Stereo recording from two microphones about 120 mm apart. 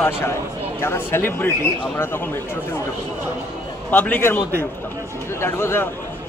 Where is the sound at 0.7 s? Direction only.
20° left (ahead or behind).